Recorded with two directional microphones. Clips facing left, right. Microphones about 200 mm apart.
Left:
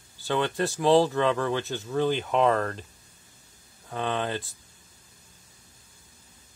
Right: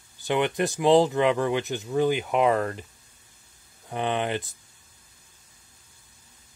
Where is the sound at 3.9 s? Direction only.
15° right (ahead or behind).